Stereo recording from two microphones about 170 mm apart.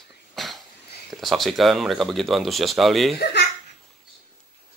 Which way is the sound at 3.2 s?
85° left.